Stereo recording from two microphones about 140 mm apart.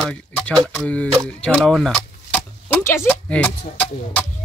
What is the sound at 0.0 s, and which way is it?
Speech, 5° left (ahead or behind).